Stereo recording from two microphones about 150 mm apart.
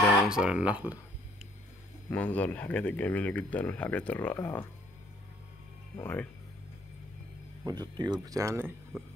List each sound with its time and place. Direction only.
0.2 s speech: 5° right (ahead or behind)
2.0 s speech: 10° left (ahead or behind)
5.9 s speech: 10° left (ahead or behind)
7.6 s speech: 30° right (ahead or behind)